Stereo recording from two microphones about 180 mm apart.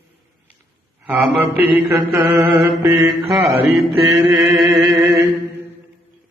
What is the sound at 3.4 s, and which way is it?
Mantra, 15° right (ahead or behind).